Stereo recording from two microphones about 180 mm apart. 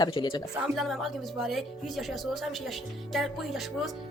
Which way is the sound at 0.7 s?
Centre (ahead or behind).